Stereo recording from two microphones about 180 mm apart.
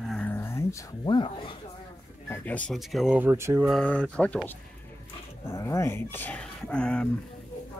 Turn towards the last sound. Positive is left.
turn(degrees=5)  # may be behind; listen again after turning